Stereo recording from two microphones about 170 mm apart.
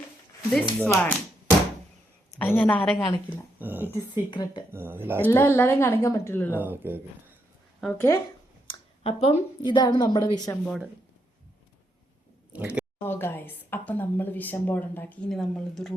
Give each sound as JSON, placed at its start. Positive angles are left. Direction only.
{"t": 0.8, "sound": "speech", "side_deg": 10}
{"t": 3.6, "sound": "speech", "side_deg": -10}
{"t": 4.1, "sound": "a woman's voice", "side_deg": 25}
{"t": 4.7, "sound": "speech", "side_deg": -15}
{"t": 5.2, "sound": "speech", "side_deg": 15}
{"t": 6.5, "sound": "speech", "side_deg": -10}
{"t": 7.8, "sound": "speech", "side_deg": 5}
{"t": 8.6, "sound": "a sound", "side_deg": 35}
{"t": 9.6, "sound": "a woman's voice", "side_deg": 25}
{"t": 12.5, "sound": "speech", "side_deg": -10}
{"t": 13.0, "sound": "speech", "side_deg": 15}